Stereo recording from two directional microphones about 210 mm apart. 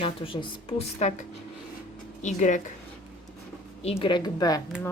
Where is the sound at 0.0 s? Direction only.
25° left (ahead or behind).